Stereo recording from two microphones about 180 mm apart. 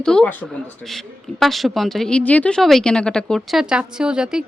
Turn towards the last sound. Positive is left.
turn(degrees=-5)  # may be behind; listen again after turning